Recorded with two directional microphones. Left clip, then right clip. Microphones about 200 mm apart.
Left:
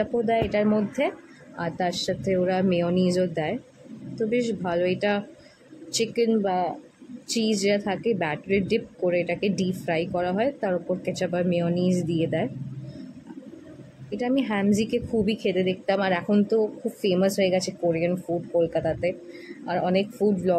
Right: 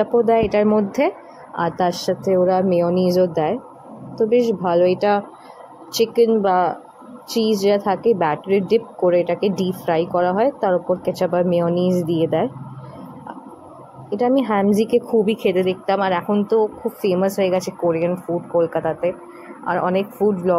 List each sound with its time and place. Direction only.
0.0 s a woman's voice: 15° right (ahead or behind)
14.1 s a woman's voice: 5° right (ahead or behind)